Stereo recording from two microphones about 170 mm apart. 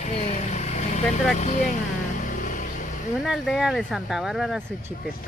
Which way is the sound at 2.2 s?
50° left (ahead or behind).